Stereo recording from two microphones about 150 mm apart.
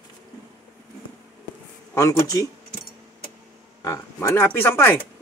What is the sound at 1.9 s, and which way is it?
Speech, 20° left (ahead or behind).